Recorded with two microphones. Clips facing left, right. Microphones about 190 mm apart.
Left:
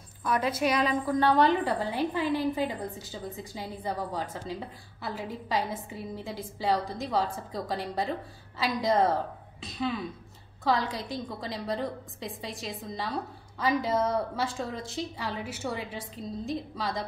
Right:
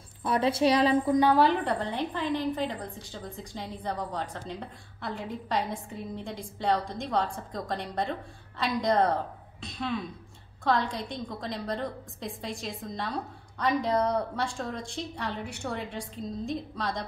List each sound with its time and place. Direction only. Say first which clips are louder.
0.2 s a woman's voice: right 3 dB; 30° right (ahead or behind)
1.1 s a woman's voice: left 1 dB; 10° right (ahead or behind)
1.4 s a woman's voice: even; centre (ahead or behind)